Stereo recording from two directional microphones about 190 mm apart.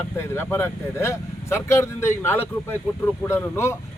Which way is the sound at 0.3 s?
10° left (ahead or behind).